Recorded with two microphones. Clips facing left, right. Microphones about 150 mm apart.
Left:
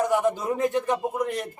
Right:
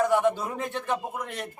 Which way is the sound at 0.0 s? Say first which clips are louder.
Even; 15° left (ahead or behind).